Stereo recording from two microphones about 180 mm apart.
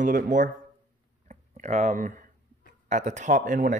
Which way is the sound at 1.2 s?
40° right (ahead or behind).